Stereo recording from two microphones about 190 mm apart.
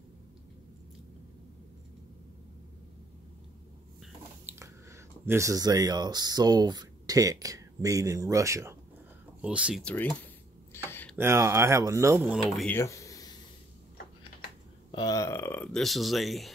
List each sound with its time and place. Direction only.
4.0 s speech: 10° right (ahead or behind)
9.4 s speech: 5° right (ahead or behind)
9.8 s speech: 10° left (ahead or behind)
10.7 s a sound: 10° left (ahead or behind)
11.1 s speech: 15° right (ahead or behind)
12.5 s a sound: 10° left (ahead or behind)
14.9 s speech: 20° left (ahead or behind); by 16.5 s centre (ahead or behind)